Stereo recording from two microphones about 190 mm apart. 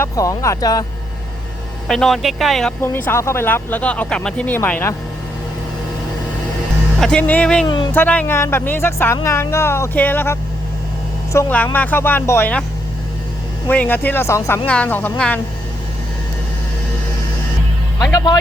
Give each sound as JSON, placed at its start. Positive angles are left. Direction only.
{"t": 0.0, "sound": "speech", "side_deg": 15}
{"t": 1.9, "sound": "speech", "side_deg": 0}
{"t": 2.8, "sound": "speech", "side_deg": 10}
{"t": 7.0, "sound": "speech", "side_deg": 5}
{"t": 13.7, "sound": "speech", "side_deg": 10}
{"t": 18.0, "sound": "speech", "side_deg": 20}